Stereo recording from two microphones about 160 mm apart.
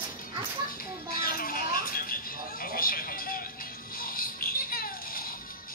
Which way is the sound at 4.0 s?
60° left (ahead or behind).